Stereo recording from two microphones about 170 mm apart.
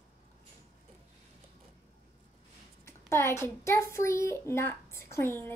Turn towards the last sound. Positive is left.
turn(degrees=15)  # may be behind; listen again after turning